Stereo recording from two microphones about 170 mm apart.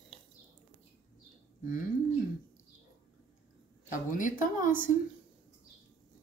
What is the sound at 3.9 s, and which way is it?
Speech, 50° left (ahead or behind).